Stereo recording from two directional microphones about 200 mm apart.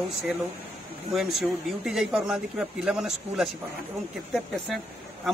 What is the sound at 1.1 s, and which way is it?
Speech, centre (ahead or behind).